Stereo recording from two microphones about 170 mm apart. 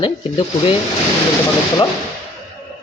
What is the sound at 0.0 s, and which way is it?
Speech, 30° left (ahead or behind).